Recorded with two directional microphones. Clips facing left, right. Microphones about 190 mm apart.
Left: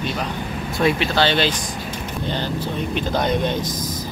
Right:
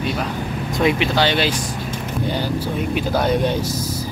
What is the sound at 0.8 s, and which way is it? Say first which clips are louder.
Speech: right 1 dB; 15° right (ahead or behind).